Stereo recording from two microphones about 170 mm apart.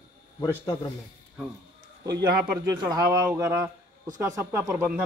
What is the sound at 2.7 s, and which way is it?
A man's voice, 25° right (ahead or behind).